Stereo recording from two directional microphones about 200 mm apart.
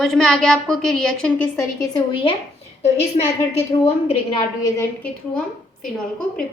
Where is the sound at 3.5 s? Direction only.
30° left (ahead or behind).